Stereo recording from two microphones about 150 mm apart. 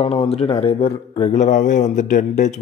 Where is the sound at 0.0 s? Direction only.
40° left (ahead or behind).